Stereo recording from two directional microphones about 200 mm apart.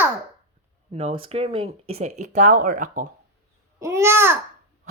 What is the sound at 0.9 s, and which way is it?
Speech, 30° right (ahead or behind).